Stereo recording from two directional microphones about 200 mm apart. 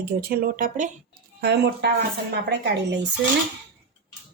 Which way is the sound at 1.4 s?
55° right (ahead or behind).